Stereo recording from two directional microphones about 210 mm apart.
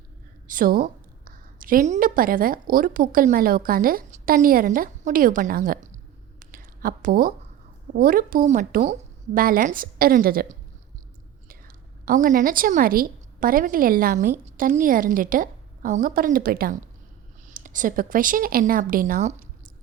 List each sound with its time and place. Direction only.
0.4 s a woman's voice: 40° right (ahead or behind)
6.4 s a sound: 40° right (ahead or behind)
7.9 s a woman's voice: 45° right (ahead or behind)
12.0 s a woman's voice: 40° right (ahead or behind)